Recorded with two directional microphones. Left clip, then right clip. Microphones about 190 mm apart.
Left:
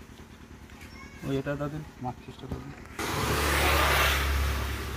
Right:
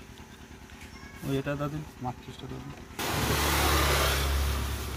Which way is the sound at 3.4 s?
65° right (ahead or behind).